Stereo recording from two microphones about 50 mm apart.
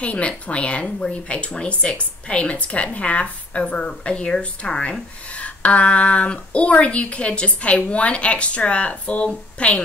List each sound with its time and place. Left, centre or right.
0.0 s speech: left